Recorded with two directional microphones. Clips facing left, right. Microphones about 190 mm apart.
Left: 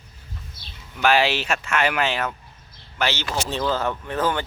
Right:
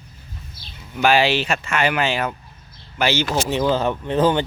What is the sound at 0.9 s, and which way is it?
Speech, centre (ahead or behind).